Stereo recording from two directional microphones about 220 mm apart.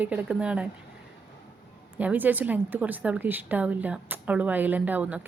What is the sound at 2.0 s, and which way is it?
Speech, 5° right (ahead or behind).